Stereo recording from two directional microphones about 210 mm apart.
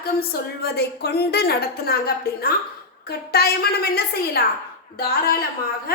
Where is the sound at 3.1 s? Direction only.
50° left (ahead or behind).